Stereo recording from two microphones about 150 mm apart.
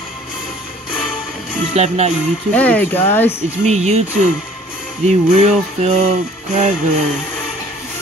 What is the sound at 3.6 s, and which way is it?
Speech, 45° right (ahead or behind).